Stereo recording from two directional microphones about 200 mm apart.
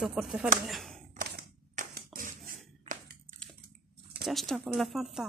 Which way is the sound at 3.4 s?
5° left (ahead or behind).